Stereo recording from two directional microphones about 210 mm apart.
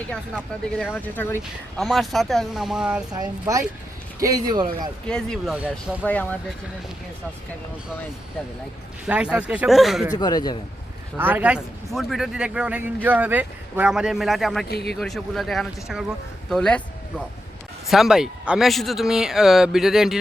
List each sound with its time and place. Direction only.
0.8 s a man's voice: 5° left (ahead or behind)
3.1 s speech: 15° right (ahead or behind)
5.0 s a man's voice: 5° left (ahead or behind)
6.1 s speech: 5° left (ahead or behind)
9.0 s a man's voice: 5° right (ahead or behind)
10.1 s a man's voice: 20° left (ahead or behind)
11.2 s a man's voice: 10° right (ahead or behind)
14.7 s speech: 50° left (ahead or behind)
14.9 s a man's voice: centre (ahead or behind)